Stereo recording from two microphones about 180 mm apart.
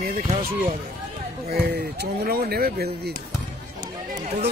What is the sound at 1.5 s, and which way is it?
Speech, 60° right (ahead or behind).